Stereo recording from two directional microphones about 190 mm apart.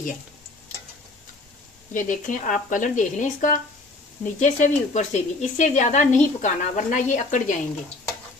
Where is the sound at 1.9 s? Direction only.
40° left (ahead or behind).